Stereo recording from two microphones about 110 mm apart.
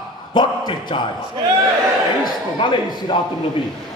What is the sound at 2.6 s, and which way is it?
Speech, 45° left (ahead or behind).